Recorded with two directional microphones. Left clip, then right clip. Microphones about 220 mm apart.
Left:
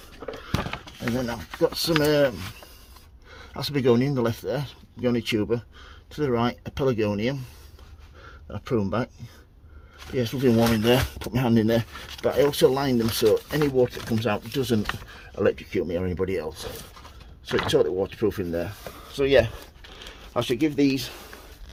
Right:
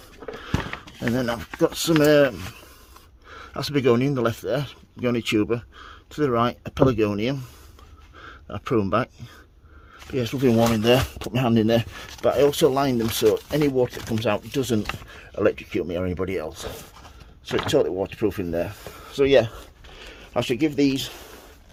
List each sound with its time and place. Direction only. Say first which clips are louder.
0.4 s a sound: right 1 dB; 40° right (ahead or behind)
1.5 s speech: right 2 dB; 35° right (ahead or behind)
10.2 s speech: right 2 dB; 30° right (ahead or behind)